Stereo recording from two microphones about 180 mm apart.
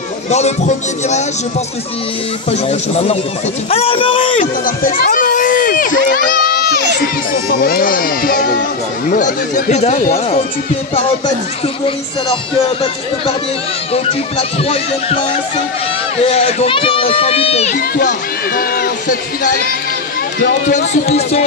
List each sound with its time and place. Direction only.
0.3 s a man's voice: 40° left (ahead or behind)
2.5 s a man's voice: 35° left (ahead or behind)
4.4 s run: 50° left (ahead or behind)
7.6 s speech: 50° left (ahead or behind)
14.6 s a man's voice: 35° left (ahead or behind)
16.3 s a man's voice: 35° left (ahead or behind)
17.7 s a man's voice: 55° left (ahead or behind)